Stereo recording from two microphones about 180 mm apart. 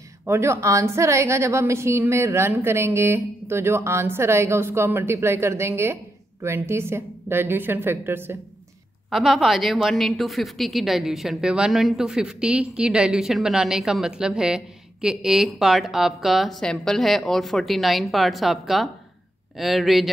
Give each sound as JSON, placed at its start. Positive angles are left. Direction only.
{"t": 0.3, "sound": "a woman's voice", "side_deg": -15}
{"t": 9.1, "sound": "a woman's voice", "side_deg": 0}